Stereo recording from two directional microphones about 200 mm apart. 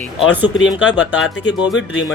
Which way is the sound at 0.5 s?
60° left (ahead or behind).